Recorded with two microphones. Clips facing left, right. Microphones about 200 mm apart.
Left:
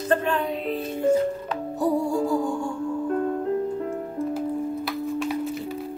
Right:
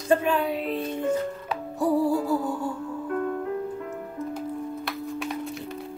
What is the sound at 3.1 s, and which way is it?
Music, 30° left (ahead or behind).